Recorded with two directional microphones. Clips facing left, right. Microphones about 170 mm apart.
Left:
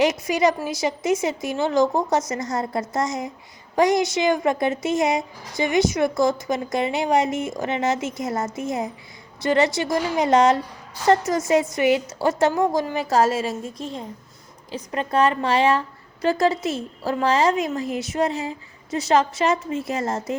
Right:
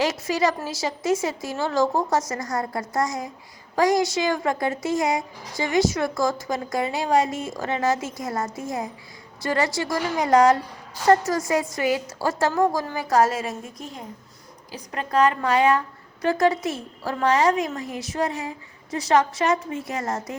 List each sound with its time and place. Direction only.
0.0 s a woman's voice: 20° left (ahead or behind)